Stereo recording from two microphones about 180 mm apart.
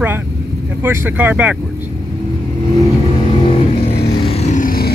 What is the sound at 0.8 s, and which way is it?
Speech, 10° right (ahead or behind).